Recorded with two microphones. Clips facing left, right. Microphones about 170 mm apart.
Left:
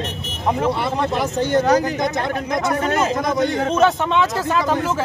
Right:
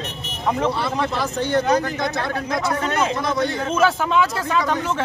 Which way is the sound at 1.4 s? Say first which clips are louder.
Left 3 dB; 45° left (ahead or behind).